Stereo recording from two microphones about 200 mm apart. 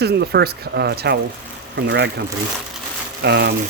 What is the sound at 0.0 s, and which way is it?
Speech, 55° right (ahead or behind).